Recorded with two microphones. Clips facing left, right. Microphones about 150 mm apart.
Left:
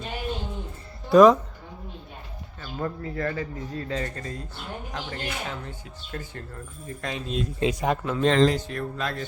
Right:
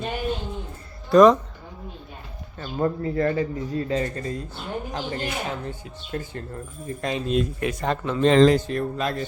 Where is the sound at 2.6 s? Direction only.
30° right (ahead or behind).